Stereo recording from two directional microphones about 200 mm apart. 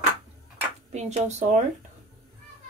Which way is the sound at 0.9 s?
35° right (ahead or behind).